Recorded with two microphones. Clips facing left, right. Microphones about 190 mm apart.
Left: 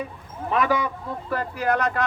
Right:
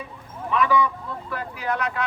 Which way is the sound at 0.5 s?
45° left (ahead or behind).